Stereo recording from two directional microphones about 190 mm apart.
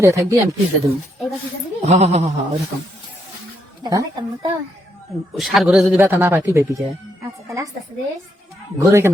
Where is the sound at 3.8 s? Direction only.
20° right (ahead or behind).